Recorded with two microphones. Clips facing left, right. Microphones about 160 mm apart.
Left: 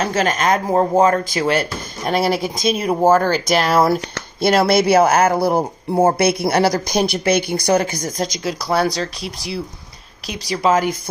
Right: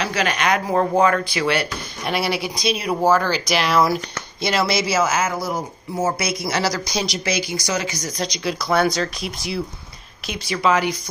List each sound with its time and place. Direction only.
0.0 s speech: 45° left (ahead or behind)